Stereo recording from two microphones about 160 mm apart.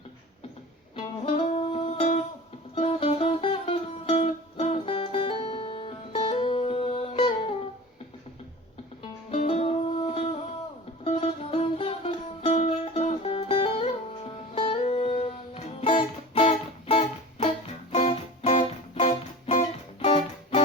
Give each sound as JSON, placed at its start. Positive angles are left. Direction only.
{"t": 0.9, "sound": "music", "side_deg": 35}
{"t": 9.3, "sound": "music", "side_deg": 40}